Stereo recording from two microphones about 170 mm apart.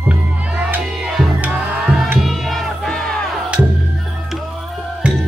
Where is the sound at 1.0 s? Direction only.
5° right (ahead or behind).